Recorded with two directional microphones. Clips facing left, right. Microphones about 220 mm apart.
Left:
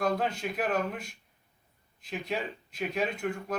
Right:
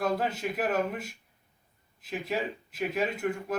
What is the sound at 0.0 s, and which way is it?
Speech, 5° right (ahead or behind).